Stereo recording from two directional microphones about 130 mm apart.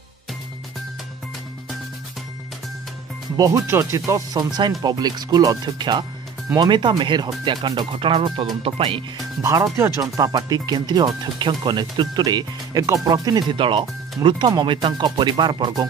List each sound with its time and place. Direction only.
3.3 s speech: 25° right (ahead or behind); by 9.0 s 45° right (ahead or behind)
9.4 s speech: 25° right (ahead or behind)